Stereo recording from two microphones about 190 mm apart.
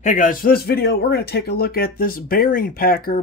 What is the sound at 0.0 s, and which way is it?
Speech, 40° left (ahead or behind).